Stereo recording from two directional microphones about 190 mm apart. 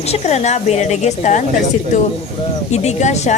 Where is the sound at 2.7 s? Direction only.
35° left (ahead or behind).